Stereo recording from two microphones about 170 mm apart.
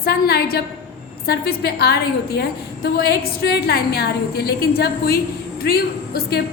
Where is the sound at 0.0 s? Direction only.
65° left (ahead or behind).